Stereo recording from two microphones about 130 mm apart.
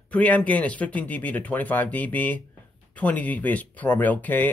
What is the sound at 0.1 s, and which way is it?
Speech, 10° left (ahead or behind).